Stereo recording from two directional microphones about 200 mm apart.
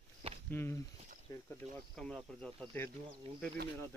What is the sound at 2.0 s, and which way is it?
Speech, centre (ahead or behind).